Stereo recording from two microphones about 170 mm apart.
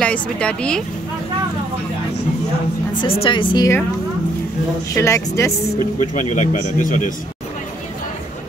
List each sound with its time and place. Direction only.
0.0 s speech: 5° left (ahead or behind)
3.2 s a woman's voice: 30° left (ahead or behind)
4.9 s speech: 15° left (ahead or behind)
5.9 s speech: 45° left (ahead or behind)